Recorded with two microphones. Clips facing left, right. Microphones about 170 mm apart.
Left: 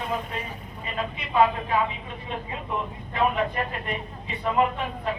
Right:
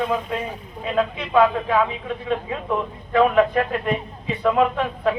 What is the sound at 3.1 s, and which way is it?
Speech, 90° right.